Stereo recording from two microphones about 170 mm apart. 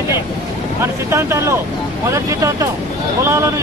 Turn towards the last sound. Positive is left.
turn(degrees=-15)  # may be behind; listen again after turning